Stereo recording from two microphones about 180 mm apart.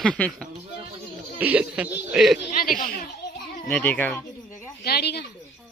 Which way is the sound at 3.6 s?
10° left (ahead or behind).